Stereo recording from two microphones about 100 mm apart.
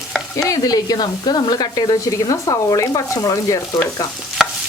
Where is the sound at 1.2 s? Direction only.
45° left (ahead or behind).